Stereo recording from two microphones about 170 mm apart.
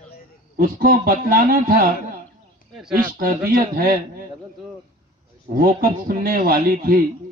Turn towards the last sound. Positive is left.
turn(degrees=-55)  # may be behind; listen again after turning